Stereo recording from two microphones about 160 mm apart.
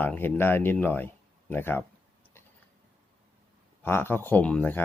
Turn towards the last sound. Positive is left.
turn(degrees=10)  # may be behind; listen again after turning